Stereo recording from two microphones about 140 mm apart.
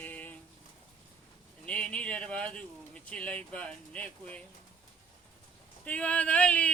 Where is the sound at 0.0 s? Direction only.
10° left (ahead or behind).